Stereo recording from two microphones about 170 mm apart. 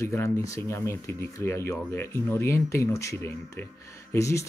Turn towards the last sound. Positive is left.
turn(degrees=15)  # may be behind; listen again after turning